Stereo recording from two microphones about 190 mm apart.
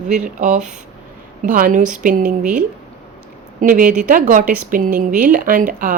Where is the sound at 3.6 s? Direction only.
45° right (ahead or behind).